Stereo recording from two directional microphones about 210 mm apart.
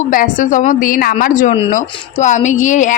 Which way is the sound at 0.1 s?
40° left (ahead or behind).